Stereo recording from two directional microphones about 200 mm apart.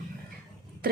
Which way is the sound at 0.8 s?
45° right (ahead or behind).